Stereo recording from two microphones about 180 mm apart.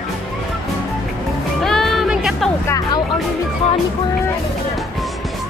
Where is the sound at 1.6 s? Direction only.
Centre (ahead or behind).